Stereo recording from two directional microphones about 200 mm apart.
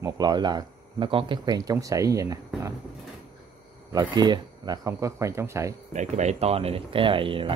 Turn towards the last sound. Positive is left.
turn(degrees=-25)  # may be behind; listen again after turning